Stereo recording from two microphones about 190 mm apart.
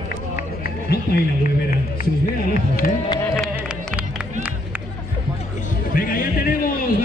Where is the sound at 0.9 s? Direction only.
55° left (ahead or behind).